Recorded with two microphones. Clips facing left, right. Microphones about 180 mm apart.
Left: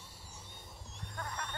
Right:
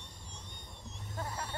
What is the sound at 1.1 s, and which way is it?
Vehicle, 25° right (ahead or behind).